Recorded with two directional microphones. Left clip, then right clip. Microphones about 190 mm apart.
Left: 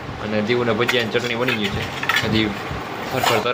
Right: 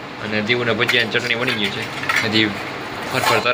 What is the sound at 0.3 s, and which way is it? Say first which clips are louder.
Speech: right 1 dB; 20° left (ahead or behind).